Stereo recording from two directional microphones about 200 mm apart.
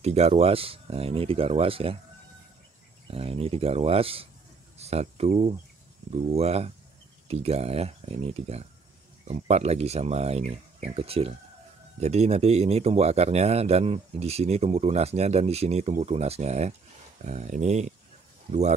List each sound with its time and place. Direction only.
0.0 s speech: 30° right (ahead or behind)
3.1 s speech: 30° right (ahead or behind)